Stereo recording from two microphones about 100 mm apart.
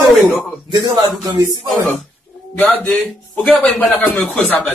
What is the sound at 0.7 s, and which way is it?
Speech, 45° right (ahead or behind).